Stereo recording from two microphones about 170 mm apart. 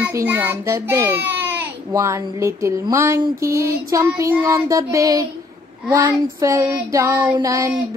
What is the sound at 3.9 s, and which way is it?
Child singing, 15° right (ahead or behind).